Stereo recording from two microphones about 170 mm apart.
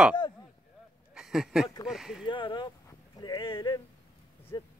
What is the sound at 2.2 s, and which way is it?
Speech, 30° left (ahead or behind).